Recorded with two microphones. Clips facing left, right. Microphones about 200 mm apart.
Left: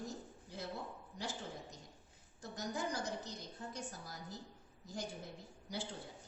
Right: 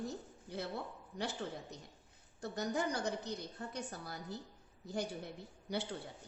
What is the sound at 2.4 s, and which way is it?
A woman's voice, 65° right (ahead or behind).